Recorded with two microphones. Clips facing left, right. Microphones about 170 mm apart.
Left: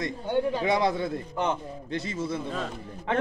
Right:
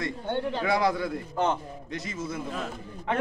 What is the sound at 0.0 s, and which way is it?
Speech, 10° left (ahead or behind).